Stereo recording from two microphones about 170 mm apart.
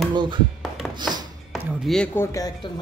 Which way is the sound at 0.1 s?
25° right (ahead or behind).